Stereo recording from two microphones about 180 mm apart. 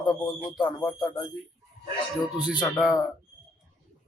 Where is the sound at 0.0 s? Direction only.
25° left (ahead or behind).